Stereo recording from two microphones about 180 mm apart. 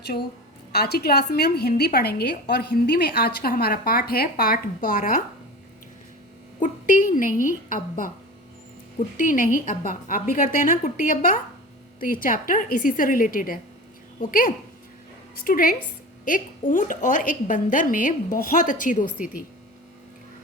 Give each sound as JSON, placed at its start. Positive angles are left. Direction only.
{"t": 0.7, "sound": "a woman's voice", "side_deg": 60}
{"t": 6.6, "sound": "a woman's voice", "side_deg": 45}
{"t": 9.1, "sound": "a woman's voice", "side_deg": 50}